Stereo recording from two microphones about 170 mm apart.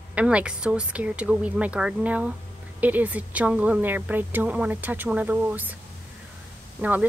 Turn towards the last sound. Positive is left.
turn(degrees=-10)  # may be behind; listen again after turning